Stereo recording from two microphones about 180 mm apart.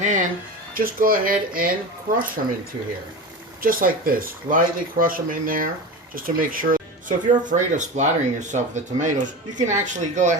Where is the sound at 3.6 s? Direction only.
50° right (ahead or behind).